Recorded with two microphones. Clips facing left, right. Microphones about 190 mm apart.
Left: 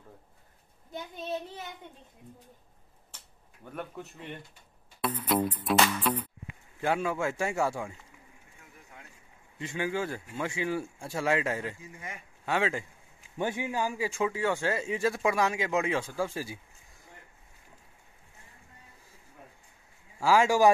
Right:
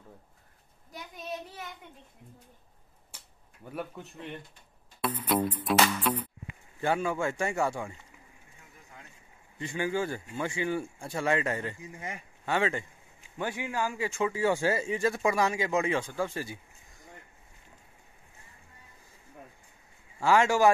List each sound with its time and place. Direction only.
0.9 s speech: 30° left (ahead or behind)
3.1 s a sound: 10° right (ahead or behind)
3.7 s speech: centre (ahead or behind)
9.6 s speech: centre (ahead or behind)
13.4 s a man's voice: 20° left (ahead or behind)
14.4 s speech: 10° right (ahead or behind); by 16.5 s 5° left (ahead or behind)
20.2 s a man's voice: 5° left (ahead or behind)